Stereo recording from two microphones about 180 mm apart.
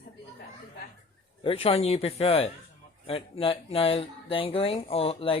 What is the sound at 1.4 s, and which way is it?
Speech, 30° left (ahead or behind).